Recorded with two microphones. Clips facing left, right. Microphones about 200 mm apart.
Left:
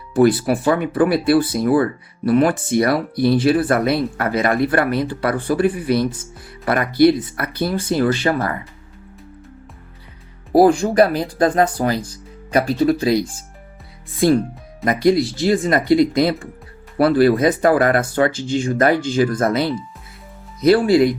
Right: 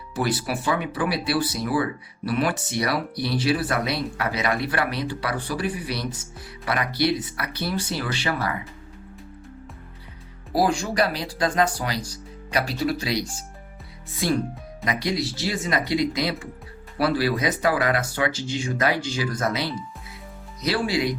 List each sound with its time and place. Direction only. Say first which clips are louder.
0.1 s speech: left 11 dB; 55° left (ahead or behind)
10.5 s speech: left 10 dB; 55° left (ahead or behind)